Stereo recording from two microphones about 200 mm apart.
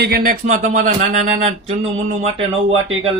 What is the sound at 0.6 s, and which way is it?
Speech, 40° right (ahead or behind).